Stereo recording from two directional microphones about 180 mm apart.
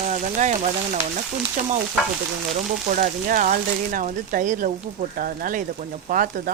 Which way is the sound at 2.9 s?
50° right (ahead or behind).